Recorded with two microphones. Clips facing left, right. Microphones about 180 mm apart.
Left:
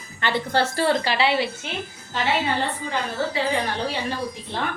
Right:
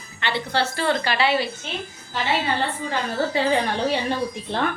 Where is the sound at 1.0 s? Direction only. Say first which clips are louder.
Even; 25° left (ahead or behind).